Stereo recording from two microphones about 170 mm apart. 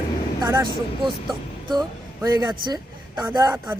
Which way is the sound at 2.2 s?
25° right (ahead or behind).